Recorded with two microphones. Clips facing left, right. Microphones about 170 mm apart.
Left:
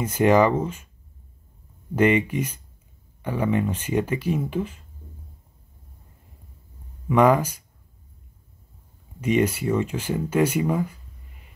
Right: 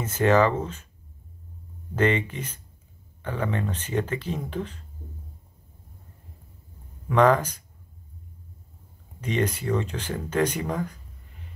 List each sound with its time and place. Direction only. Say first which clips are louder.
0.0 s speech: left 2 dB; 10° left (ahead or behind)
2.0 s speech: left 4 dB; 10° left (ahead or behind)
7.1 s speech: left 2 dB; 10° left (ahead or behind)
9.2 s speech: left 5 dB; 10° left (ahead or behind)